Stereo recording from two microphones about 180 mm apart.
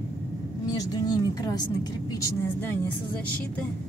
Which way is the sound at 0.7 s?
20° left (ahead or behind).